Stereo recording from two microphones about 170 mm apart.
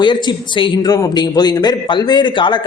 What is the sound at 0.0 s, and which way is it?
A man's voice, 25° left (ahead or behind).